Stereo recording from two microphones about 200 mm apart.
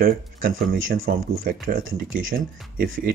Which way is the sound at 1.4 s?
45° right (ahead or behind).